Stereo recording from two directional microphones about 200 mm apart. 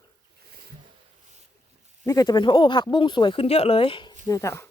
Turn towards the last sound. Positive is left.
turn(degrees=15)  # may be behind; listen again after turning